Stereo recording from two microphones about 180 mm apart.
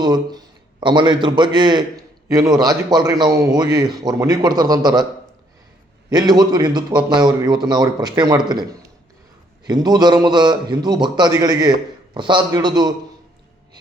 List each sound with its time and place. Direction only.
0.0 s a man's voice: 20° right (ahead or behind)
6.1 s a man's voice: 25° right (ahead or behind)
9.6 s a man's voice: 20° right (ahead or behind)